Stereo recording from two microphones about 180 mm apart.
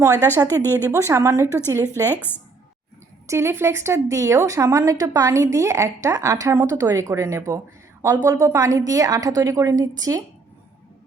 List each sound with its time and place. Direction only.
0.0 s a woman's voice: 15° right (ahead or behind)
1.5 s a woman's voice: 15° left (ahead or behind)
3.2 s a woman's voice: 15° right (ahead or behind)